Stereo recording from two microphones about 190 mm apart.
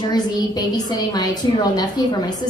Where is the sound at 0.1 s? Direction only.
20° left (ahead or behind).